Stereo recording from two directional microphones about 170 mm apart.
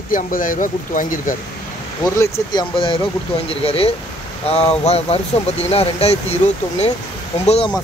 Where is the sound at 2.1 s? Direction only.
15° left (ahead or behind).